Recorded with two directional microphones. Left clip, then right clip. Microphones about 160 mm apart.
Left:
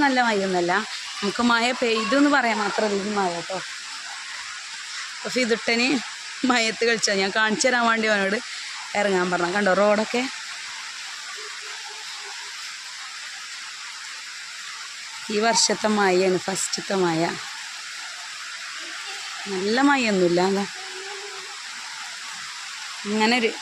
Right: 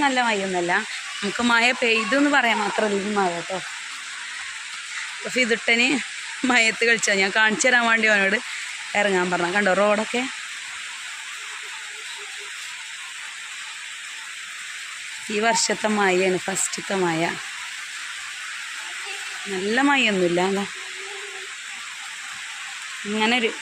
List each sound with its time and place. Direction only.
0.0 s speech: 20° left (ahead or behind)
0.5 s speech: 5° left (ahead or behind)
5.3 s speech: centre (ahead or behind)
15.3 s speech: centre (ahead or behind)
19.6 s speech: centre (ahead or behind)
23.1 s speech: 5° left (ahead or behind)